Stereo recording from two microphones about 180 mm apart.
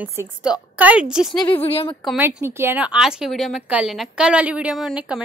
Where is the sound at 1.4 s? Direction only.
30° left (ahead or behind).